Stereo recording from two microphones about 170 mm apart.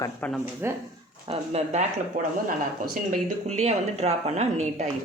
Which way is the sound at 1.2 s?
35° right (ahead or behind).